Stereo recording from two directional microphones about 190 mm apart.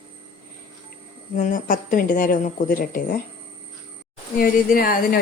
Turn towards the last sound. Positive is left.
turn(degrees=50)  # may be behind; listen again after turning